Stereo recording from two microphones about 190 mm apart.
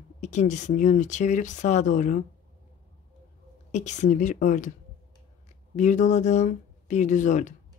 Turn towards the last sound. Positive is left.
turn(degrees=40)  # may be behind; listen again after turning